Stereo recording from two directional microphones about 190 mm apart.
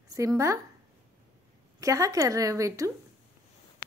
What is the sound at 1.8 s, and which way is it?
A woman's voice, 15° right (ahead or behind).